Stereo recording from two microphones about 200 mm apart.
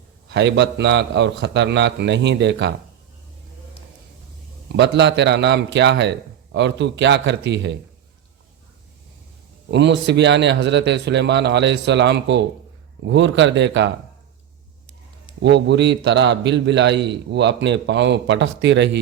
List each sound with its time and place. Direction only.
0.3 s a man's voice: 60° right (ahead or behind)
4.7 s a man's voice: 60° right (ahead or behind)
9.6 s a man's voice: 60° right (ahead or behind)
15.4 s a man's voice: 60° right (ahead or behind)